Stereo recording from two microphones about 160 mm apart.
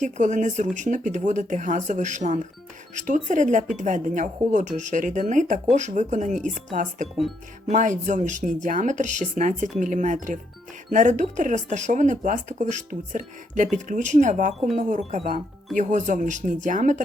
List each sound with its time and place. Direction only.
0.0 s speech: 50° right (ahead or behind)